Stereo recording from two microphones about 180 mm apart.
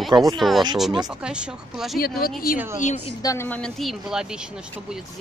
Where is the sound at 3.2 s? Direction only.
15° left (ahead or behind).